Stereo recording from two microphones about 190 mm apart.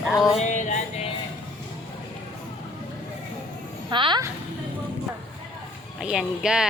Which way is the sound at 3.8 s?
25° right (ahead or behind).